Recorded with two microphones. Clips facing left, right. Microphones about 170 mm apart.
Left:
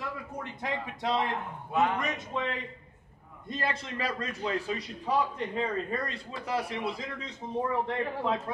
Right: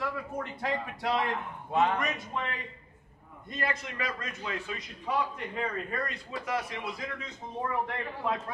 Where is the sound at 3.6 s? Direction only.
30° left (ahead or behind).